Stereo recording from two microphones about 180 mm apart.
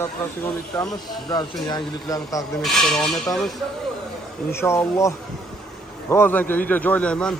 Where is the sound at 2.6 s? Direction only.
Centre (ahead or behind).